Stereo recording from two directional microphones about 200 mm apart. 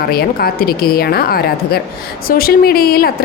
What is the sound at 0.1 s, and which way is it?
Speech, 50° left (ahead or behind).